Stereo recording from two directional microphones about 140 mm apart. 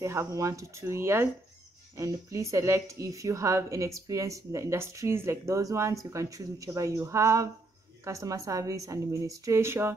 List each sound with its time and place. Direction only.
0.0 s speech: 20° right (ahead or behind)